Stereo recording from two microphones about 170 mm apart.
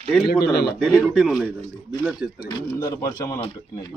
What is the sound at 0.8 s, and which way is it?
Speech, 5° left (ahead or behind).